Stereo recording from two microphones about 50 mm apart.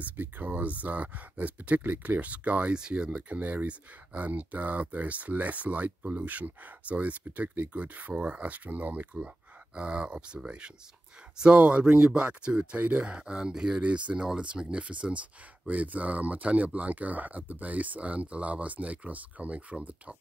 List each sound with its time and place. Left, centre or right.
0.0 s speech: right
9.8 s speech: right
12.7 s speech: right; by 13.7 s centre
13.7 s speech: right